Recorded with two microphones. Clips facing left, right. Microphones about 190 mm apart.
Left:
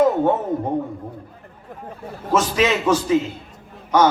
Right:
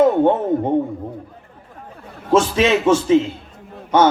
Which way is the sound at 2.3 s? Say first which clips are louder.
Right 4 dB; 25° right (ahead or behind).